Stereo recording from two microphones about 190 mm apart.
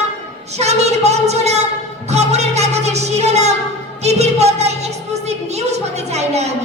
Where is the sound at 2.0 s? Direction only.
35° right (ahead or behind).